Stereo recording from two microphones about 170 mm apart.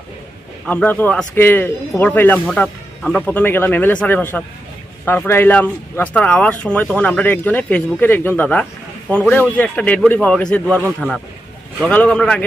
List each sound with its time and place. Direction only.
0.7 s speech: 10° left (ahead or behind)
11.8 s a man's voice: 5° left (ahead or behind)